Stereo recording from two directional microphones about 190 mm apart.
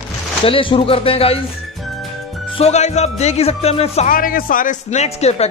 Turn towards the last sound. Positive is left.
turn(degrees=35)  # may be behind; listen again after turning